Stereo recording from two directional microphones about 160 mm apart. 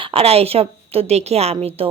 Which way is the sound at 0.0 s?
35° right (ahead or behind).